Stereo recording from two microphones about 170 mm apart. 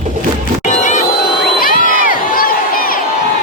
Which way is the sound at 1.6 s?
50° left (ahead or behind).